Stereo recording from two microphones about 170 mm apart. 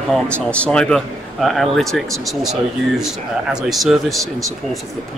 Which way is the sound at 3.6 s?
Centre (ahead or behind).